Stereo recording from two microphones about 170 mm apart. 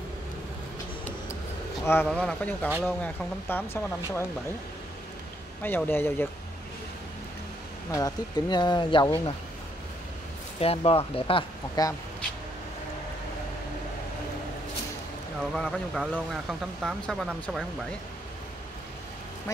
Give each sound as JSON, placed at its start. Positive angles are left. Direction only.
{"t": 1.9, "sound": "speech", "side_deg": 10}
{"t": 5.6, "sound": "speech", "side_deg": 10}
{"t": 7.9, "sound": "speech", "side_deg": 25}
{"t": 10.6, "sound": "speech", "side_deg": 35}
{"t": 15.5, "sound": "speech", "side_deg": 0}